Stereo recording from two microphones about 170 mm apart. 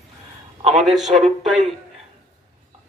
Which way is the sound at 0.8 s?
Centre (ahead or behind).